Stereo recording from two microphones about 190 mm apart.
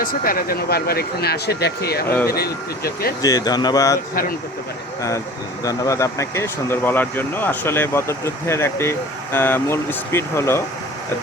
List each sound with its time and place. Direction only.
0.0 s speech: 50° left (ahead or behind)
3.2 s speech: 20° left (ahead or behind)
4.1 s speech: 50° left (ahead or behind)
5.6 s speech: 15° left (ahead or behind)